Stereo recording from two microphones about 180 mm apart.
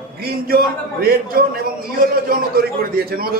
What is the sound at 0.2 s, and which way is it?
A man's voice, 55° right (ahead or behind).